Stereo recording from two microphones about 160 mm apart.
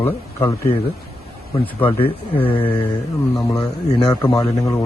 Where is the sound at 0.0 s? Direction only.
15° left (ahead or behind).